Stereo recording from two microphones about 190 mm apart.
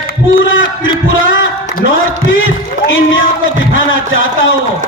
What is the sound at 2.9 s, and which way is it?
Speech, 90° left.